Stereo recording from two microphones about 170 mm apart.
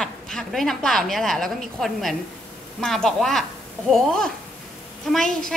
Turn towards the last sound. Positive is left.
turn(degrees=5)  # may be behind; listen again after turning